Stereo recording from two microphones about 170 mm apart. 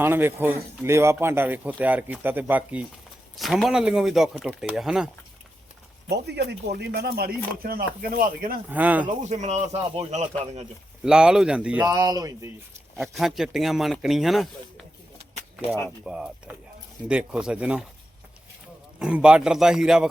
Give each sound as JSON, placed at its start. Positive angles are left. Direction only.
{"t": 0.0, "sound": "speech", "side_deg": -15}
{"t": 6.1, "sound": "speech", "side_deg": -75}
{"t": 8.7, "sound": "speech", "side_deg": -10}
{"t": 9.3, "sound": "speech", "side_deg": -40}
{"t": 11.0, "sound": "speech", "side_deg": -5}
{"t": 11.9, "sound": "speech", "side_deg": -20}
{"t": 13.0, "sound": "speech", "side_deg": 0}
{"t": 16.0, "sound": "speech", "side_deg": -5}
{"t": 18.9, "sound": "speech", "side_deg": -5}